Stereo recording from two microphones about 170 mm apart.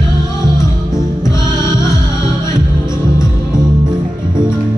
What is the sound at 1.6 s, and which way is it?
Music, 25° right (ahead or behind).